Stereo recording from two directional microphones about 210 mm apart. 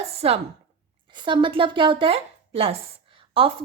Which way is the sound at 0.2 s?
30° right (ahead or behind).